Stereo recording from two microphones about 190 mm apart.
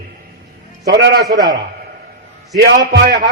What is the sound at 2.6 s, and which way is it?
Speech, 60° right (ahead or behind).